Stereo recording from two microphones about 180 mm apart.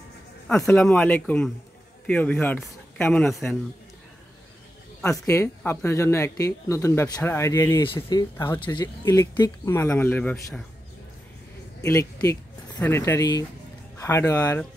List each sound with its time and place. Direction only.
0.5 s speech: 5° left (ahead or behind)
5.0 s speech: 15° left (ahead or behind)
11.8 s speech: 15° left (ahead or behind)